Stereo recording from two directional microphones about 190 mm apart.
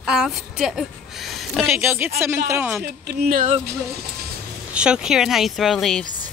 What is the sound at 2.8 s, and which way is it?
Speech, 55° right (ahead or behind).